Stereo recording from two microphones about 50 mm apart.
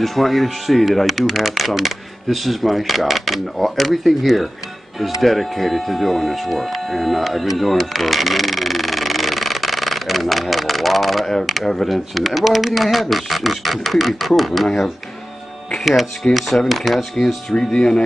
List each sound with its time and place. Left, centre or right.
0.0 s speech: centre
15.7 s speech: centre
17.6 s speech: centre